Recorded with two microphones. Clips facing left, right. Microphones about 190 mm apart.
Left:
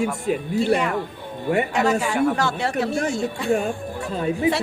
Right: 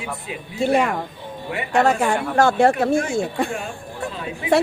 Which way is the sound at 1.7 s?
50° right (ahead or behind).